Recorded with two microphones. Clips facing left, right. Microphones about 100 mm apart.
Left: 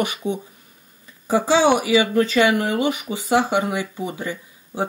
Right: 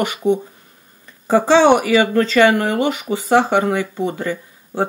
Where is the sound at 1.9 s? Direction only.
55° right (ahead or behind).